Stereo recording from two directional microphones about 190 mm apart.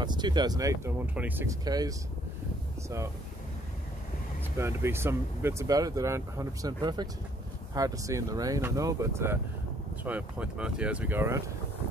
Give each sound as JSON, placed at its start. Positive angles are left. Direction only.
{"t": 0.0, "sound": "speech", "side_deg": -20}
{"t": 4.6, "sound": "speech", "side_deg": -15}